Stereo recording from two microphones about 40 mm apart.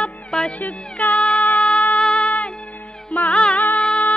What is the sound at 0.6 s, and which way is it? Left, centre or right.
Music, left.